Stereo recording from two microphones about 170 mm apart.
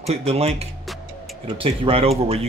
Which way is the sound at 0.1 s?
35° right (ahead or behind).